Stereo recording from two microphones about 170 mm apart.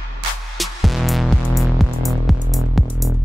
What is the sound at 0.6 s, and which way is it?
Music, centre (ahead or behind).